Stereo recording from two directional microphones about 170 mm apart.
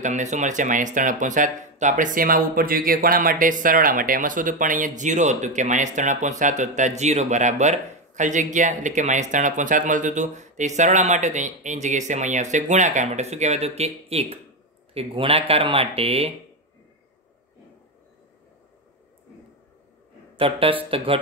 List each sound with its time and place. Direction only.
0.0 s speech: 45° right (ahead or behind)
20.3 s speech: 35° right (ahead or behind)